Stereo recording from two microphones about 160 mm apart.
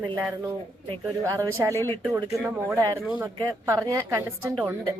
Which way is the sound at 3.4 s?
20° right (ahead or behind).